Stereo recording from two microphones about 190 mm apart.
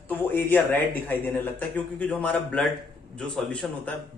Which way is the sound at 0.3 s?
10° left (ahead or behind).